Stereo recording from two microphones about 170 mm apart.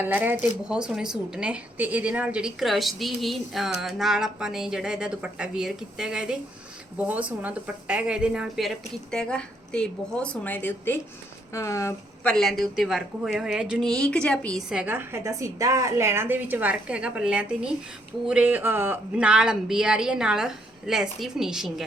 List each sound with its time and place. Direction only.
0.0 s a woman's voice: 10° right (ahead or behind); by 12.3 s 15° left (ahead or behind)
12.3 s speech: centre (ahead or behind)
14.7 s a woman's voice: 10° right (ahead or behind)